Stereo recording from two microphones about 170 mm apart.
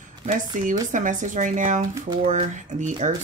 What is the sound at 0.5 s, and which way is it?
Speech, 50° right (ahead or behind).